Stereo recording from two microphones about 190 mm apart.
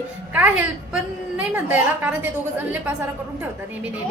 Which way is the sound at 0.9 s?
10° right (ahead or behind).